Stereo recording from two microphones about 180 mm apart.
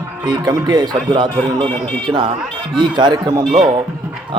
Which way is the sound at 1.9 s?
5° left (ahead or behind).